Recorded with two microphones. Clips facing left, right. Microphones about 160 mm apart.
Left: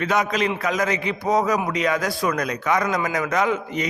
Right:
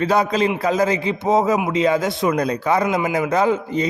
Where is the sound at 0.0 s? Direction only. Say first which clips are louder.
Right 4 dB; 35° right (ahead or behind).